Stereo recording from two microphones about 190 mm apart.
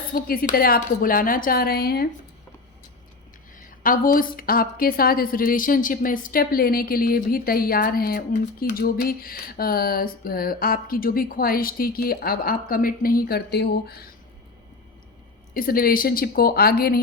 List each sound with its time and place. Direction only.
0.1 s a woman's voice: 50° left (ahead or behind)
3.5 s a woman's voice: 45° left (ahead or behind)
15.5 s a woman's voice: 50° left (ahead or behind)